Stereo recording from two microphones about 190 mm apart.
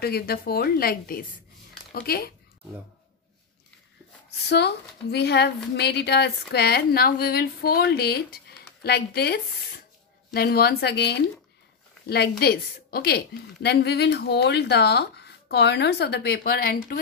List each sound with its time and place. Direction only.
0.0 s speech: 55° left (ahead or behind)
4.5 s a woman's voice: 60° left (ahead or behind)